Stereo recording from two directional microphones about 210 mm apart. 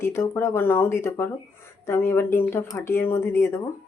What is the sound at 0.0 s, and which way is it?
Speech, 10° left (ahead or behind).